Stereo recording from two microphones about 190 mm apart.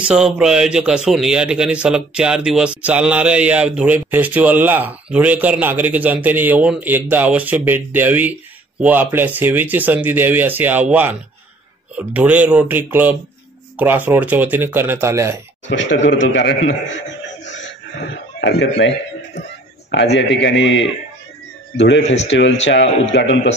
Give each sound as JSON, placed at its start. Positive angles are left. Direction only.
{"t": 0.1, "sound": "a man's voice", "side_deg": -5}
{"t": 16.1, "sound": "a man's voice", "side_deg": 70}
{"t": 17.5, "sound": "chuckle", "side_deg": 70}
{"t": 18.4, "sound": "a man's voice", "side_deg": 65}
{"t": 19.9, "sound": "a man's voice", "side_deg": 65}
{"t": 22.0, "sound": "speech", "side_deg": 35}
{"t": 22.3, "sound": "a man's voice", "side_deg": 75}